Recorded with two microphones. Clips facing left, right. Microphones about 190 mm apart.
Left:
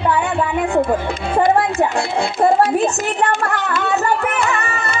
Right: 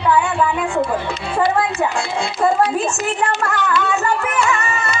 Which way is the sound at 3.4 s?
40° left (ahead or behind).